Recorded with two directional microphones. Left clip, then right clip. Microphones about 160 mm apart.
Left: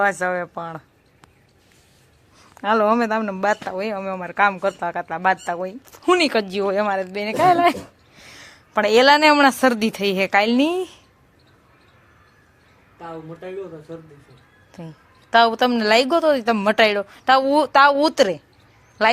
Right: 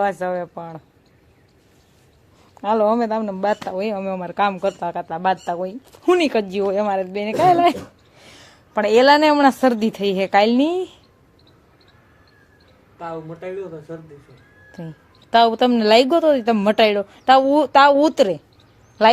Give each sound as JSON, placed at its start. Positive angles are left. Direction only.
{"t": 0.0, "sound": "speech", "side_deg": -5}
{"t": 2.6, "sound": "speech", "side_deg": 0}
{"t": 6.9, "sound": "speech", "side_deg": -20}
{"t": 8.7, "sound": "speech", "side_deg": -10}
{"t": 14.7, "sound": "a woman's voice", "side_deg": -25}